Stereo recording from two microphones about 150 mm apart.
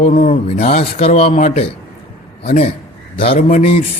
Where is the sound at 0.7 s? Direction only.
45° left (ahead or behind).